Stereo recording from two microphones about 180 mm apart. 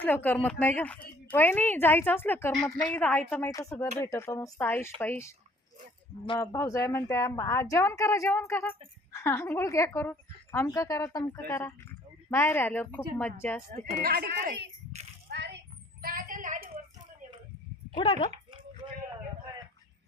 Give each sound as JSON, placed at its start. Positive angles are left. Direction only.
{"t": 0.0, "sound": "a woman's voice", "side_deg": 10}
{"t": 6.4, "sound": "a woman's voice", "side_deg": 15}
{"t": 14.0, "sound": "speech", "side_deg": -60}
{"t": 15.3, "sound": "a sound", "side_deg": -70}
{"t": 17.9, "sound": "speech", "side_deg": 25}